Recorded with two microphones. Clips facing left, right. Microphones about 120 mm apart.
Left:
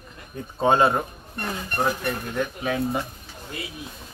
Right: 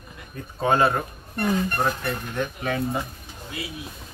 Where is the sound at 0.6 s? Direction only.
20° left (ahead or behind); by 3.0 s 5° left (ahead or behind).